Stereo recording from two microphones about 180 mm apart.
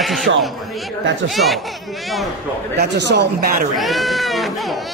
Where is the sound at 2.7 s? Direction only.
70° right (ahead or behind).